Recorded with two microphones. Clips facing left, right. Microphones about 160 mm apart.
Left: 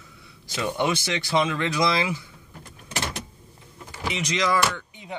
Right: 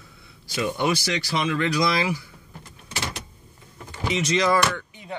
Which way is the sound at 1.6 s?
20° left (ahead or behind).